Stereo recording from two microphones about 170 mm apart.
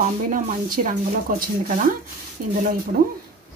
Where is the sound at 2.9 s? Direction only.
55° right (ahead or behind).